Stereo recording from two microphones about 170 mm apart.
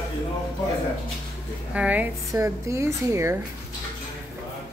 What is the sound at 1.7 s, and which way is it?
Speech, 10° right (ahead or behind).